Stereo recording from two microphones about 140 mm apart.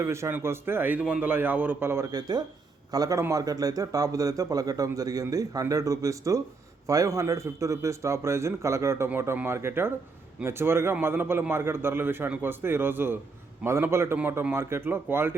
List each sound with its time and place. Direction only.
0.0 s a man's voice: 20° right (ahead or behind)